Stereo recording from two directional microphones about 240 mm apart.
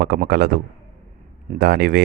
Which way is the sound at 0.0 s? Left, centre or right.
Right.